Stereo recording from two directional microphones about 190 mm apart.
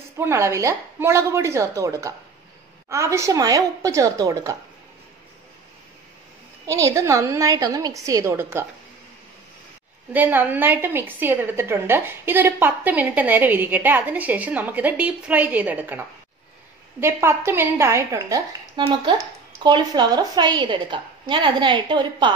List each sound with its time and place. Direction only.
0.2 s a woman's voice: 15° right (ahead or behind)
6.6 s a woman's voice: 15° right (ahead or behind)
10.1 s a woman's voice: 10° right (ahead or behind); by 22.3 s 25° right (ahead or behind)